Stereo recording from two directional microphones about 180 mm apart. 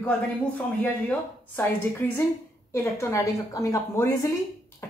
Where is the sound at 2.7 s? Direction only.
15° left (ahead or behind).